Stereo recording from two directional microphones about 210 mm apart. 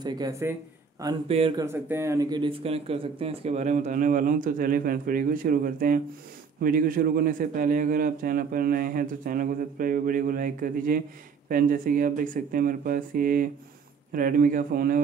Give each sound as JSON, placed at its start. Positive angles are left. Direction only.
{"t": 0.0, "sound": "speech", "side_deg": -20}
{"t": 1.0, "sound": "speech", "side_deg": -25}